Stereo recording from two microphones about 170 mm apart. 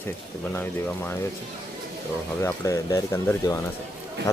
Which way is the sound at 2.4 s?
15° left (ahead or behind).